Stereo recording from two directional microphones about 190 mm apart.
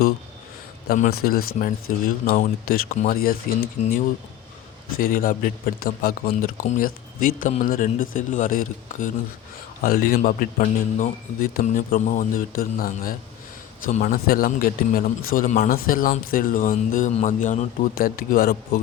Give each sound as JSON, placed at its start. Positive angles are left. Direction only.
{"t": 0.9, "sound": "a man's voice", "side_deg": 50}
{"t": 4.9, "sound": "a man's voice", "side_deg": 50}